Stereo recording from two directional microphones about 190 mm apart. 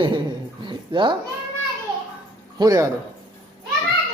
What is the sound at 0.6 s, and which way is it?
Dog, 25° right (ahead or behind).